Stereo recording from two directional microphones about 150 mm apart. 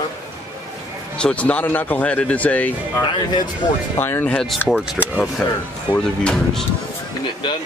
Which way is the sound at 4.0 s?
15° left (ahead or behind).